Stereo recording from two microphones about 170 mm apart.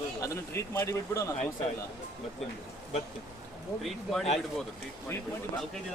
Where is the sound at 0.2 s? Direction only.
15° left (ahead or behind).